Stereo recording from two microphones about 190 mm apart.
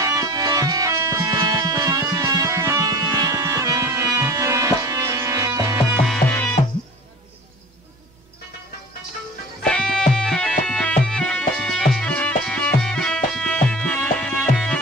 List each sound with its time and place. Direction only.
0.0 s music: 20° right (ahead or behind)
6.1 s music: 10° left (ahead or behind)
9.6 s music: 5° left (ahead or behind)